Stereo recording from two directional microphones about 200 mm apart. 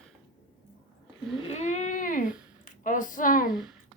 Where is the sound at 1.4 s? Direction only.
35° left (ahead or behind).